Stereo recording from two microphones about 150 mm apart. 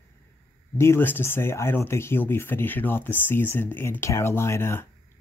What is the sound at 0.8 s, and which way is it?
Speech, 15° left (ahead or behind).